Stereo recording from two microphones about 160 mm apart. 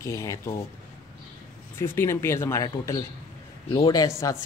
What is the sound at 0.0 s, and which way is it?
Speech, 20° left (ahead or behind).